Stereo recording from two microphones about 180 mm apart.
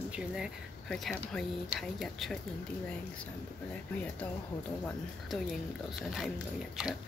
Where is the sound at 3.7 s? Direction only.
10° left (ahead or behind).